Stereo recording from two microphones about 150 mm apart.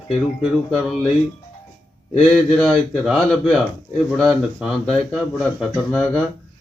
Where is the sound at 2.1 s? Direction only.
Centre (ahead or behind).